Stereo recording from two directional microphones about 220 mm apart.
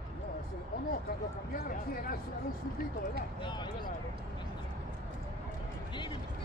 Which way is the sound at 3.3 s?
20° left (ahead or behind).